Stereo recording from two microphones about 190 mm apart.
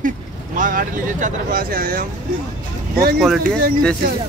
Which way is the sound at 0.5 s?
45° right (ahead or behind).